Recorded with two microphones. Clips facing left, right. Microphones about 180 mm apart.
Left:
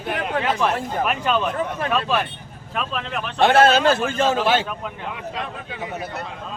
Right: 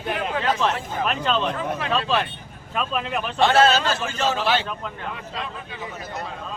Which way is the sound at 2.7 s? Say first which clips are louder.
Right 1 dB; centre (ahead or behind).